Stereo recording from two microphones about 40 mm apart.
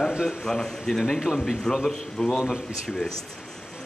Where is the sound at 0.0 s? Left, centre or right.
Right.